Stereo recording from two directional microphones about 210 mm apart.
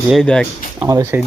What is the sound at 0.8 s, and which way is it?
Speech, 10° right (ahead or behind).